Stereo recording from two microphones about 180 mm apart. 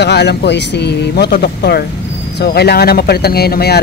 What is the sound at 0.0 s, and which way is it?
Speech, 70° left (ahead or behind).